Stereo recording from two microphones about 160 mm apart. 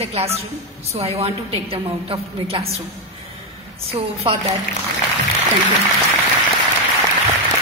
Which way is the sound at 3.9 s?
40° right (ahead or behind).